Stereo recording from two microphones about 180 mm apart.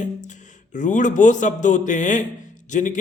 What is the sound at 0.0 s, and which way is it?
A man's voice, 45° left (ahead or behind).